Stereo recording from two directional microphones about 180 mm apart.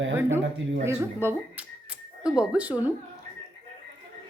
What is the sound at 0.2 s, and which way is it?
Speech, 15° right (ahead or behind).